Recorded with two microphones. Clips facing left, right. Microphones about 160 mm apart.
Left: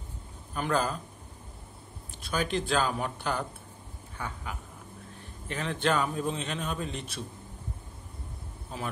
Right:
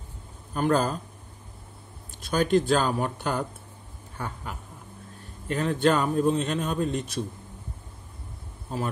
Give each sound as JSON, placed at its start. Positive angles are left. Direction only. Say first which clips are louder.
{"t": 0.6, "sound": "speech", "louder": "right 5 dB", "side_deg": -40}
{"t": 2.2, "sound": "a man's voice", "louder": "right 8 dB", "side_deg": -40}
{"t": 5.5, "sound": "a man's voice", "louder": "right 6 dB", "side_deg": -40}